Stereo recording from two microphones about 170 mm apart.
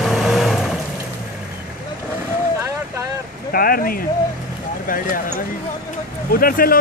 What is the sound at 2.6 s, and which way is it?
Boat, 15° right (ahead or behind).